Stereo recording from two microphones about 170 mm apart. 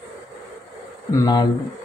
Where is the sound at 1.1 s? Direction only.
25° left (ahead or behind).